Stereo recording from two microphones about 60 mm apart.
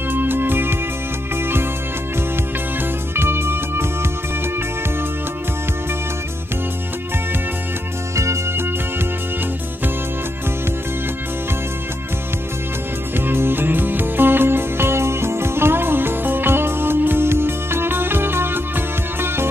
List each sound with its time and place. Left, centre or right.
0.1 s music: right
3.2 s music: right
8.2 s music: right
13.3 s music: right